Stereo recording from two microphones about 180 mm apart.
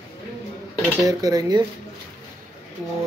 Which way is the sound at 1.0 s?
20° right (ahead or behind).